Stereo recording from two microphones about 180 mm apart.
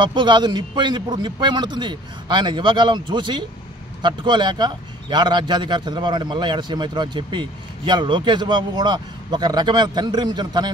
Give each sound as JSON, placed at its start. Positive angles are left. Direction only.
{"t": 0.0, "sound": "a man's voice", "side_deg": -25}